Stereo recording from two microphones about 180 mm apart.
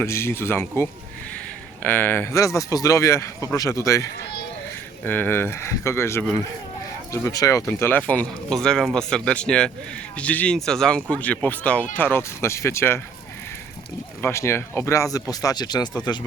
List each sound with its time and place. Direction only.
0.0 s speech: 15° left (ahead or behind)
14.2 s speech: 15° left (ahead or behind)